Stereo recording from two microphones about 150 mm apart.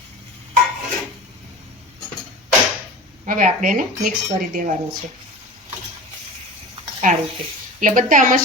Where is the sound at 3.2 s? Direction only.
60° right (ahead or behind).